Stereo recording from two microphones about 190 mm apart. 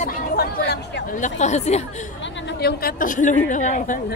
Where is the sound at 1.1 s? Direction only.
40° left (ahead or behind).